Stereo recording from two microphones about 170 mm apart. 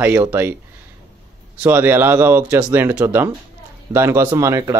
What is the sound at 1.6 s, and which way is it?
Speech, 10° right (ahead or behind).